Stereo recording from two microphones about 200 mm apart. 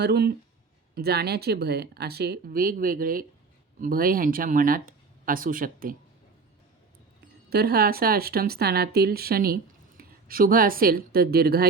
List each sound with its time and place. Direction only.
0.0 s speech: 55° right (ahead or behind)
7.5 s speech: 50° right (ahead or behind)